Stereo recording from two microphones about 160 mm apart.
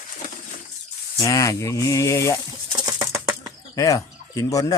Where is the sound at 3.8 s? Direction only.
20° left (ahead or behind).